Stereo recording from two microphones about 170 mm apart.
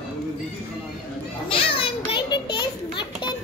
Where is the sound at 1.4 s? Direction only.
30° left (ahead or behind).